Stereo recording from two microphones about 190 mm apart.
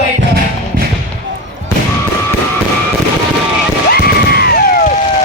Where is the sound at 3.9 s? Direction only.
55° left (ahead or behind).